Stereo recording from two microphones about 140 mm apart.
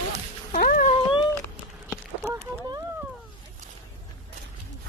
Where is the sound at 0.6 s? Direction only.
85° left.